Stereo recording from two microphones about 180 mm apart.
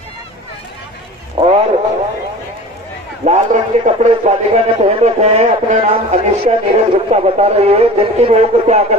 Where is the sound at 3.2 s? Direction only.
35° right (ahead or behind).